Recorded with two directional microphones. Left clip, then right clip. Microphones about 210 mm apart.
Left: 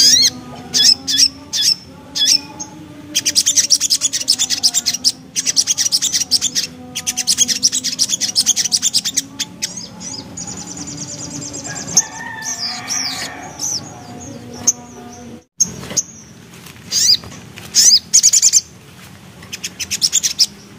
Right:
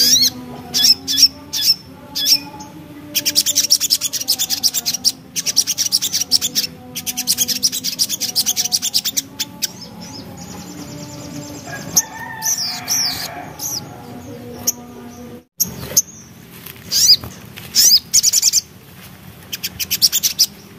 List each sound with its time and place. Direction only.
0.0 s squawk: 5° left (ahead or behind)
3.1 s bird: centre (ahead or behind)
12.8 s bird: centre (ahead or behind)
13.6 s music: centre (ahead or behind)
15.6 s a sound: 30° right (ahead or behind)
16.9 s a sound: 20° right (ahead or behind)
17.7 s bird: centre (ahead or behind)
19.5 s bird: 10° right (ahead or behind)